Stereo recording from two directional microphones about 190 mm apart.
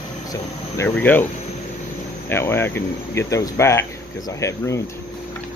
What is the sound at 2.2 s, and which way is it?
Speech, 15° left (ahead or behind).